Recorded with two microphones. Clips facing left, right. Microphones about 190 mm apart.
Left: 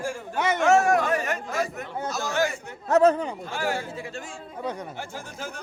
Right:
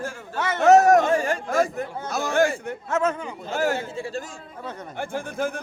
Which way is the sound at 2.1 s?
55° right (ahead or behind).